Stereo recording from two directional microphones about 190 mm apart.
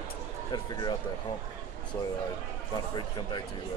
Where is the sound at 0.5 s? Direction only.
25° left (ahead or behind).